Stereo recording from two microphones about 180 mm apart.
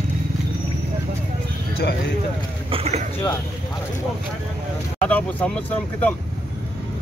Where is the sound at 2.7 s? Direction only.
35° right (ahead or behind).